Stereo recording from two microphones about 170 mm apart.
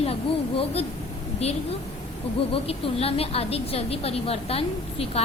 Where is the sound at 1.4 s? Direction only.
40° left (ahead or behind).